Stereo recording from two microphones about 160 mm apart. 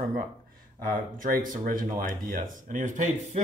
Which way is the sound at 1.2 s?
60° right (ahead or behind).